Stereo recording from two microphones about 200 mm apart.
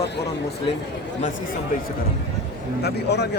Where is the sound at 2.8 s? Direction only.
55° left (ahead or behind).